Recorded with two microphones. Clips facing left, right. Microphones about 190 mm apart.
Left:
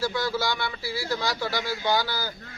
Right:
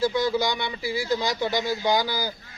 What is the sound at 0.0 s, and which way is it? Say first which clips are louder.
A man's voice: right 4 dB; 20° right (ahead or behind).